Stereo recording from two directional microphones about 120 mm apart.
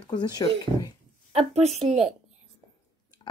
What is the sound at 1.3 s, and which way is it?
Speech, 60° right (ahead or behind).